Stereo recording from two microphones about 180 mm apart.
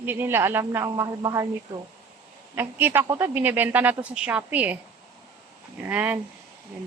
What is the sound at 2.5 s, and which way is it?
A woman's voice, 10° right (ahead or behind).